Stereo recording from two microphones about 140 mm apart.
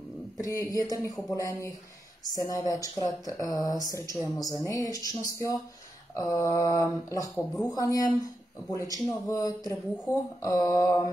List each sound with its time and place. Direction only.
0.4 s speech: 25° left (ahead or behind)
6.1 s speech: 20° left (ahead or behind)